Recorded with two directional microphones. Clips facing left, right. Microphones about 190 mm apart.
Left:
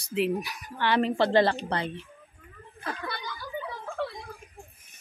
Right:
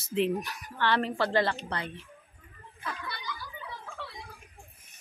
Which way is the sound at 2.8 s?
45° left (ahead or behind).